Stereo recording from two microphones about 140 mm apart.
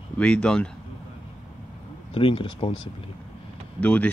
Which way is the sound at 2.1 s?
40° left (ahead or behind).